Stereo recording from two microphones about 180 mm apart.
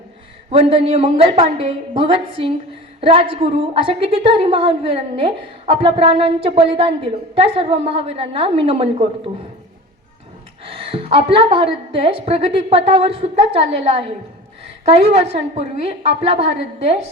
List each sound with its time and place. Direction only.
0.5 s a woman's voice: 30° right (ahead or behind)
10.7 s a woman's voice: 30° right (ahead or behind)